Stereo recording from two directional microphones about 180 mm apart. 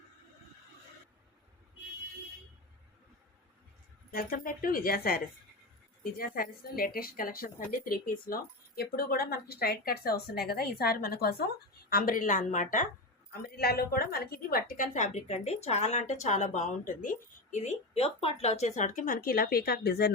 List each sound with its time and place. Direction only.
4.1 s a woman's voice: 55° left (ahead or behind)
13.3 s a woman's voice: 60° left (ahead or behind)